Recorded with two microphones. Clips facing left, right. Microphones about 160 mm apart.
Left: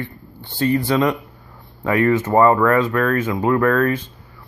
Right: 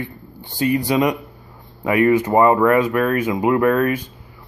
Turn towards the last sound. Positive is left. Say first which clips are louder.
# even
turn(degrees=-15)  # may be behind; listen again after turning